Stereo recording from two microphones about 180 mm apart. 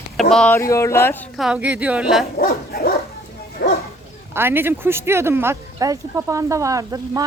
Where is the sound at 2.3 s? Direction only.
55° left (ahead or behind).